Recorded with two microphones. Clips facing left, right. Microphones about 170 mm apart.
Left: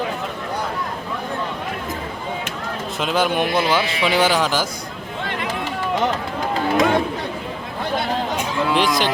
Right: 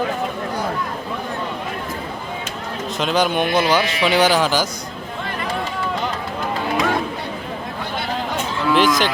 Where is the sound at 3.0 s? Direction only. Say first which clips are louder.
Right 1 dB; centre (ahead or behind).